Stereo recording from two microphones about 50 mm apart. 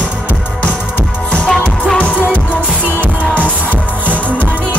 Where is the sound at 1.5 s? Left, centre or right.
Left.